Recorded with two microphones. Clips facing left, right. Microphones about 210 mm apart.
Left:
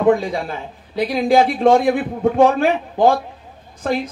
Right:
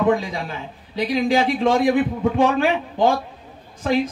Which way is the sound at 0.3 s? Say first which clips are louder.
Left 4 dB; 50° left (ahead or behind).